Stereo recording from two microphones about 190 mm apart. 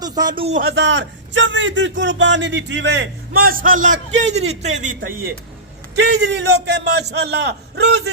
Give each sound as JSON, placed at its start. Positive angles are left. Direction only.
{"t": 0.0, "sound": "a man's voice", "side_deg": -20}
{"t": 0.6, "sound": "a man's voice", "side_deg": -65}
{"t": 6.0, "sound": "a man's voice", "side_deg": -60}